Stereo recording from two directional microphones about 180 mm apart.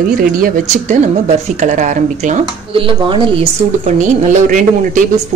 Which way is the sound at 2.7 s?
30° right (ahead or behind).